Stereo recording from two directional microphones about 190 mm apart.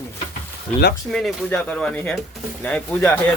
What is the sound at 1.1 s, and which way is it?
Speech, centre (ahead or behind).